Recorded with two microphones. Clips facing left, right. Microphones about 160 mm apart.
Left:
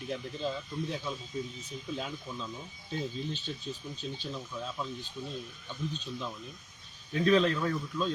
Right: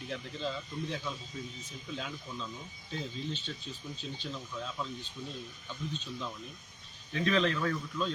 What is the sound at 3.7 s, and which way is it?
Speech, 30° left (ahead or behind).